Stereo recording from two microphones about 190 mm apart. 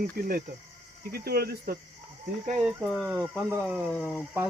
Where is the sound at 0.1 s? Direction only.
50° right (ahead or behind).